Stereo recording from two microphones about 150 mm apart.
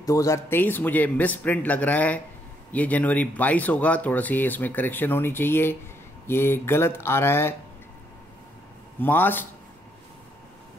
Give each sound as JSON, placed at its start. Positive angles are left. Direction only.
{"t": 0.0, "sound": "speech", "side_deg": 20}
{"t": 9.0, "sound": "speech", "side_deg": 15}